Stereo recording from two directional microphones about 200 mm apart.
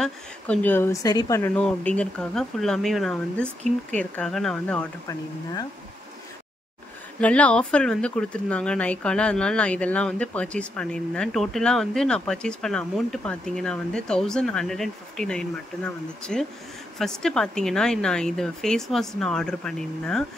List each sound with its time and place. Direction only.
0.0 s speech: 5° left (ahead or behind)
7.2 s speech: 5° left (ahead or behind)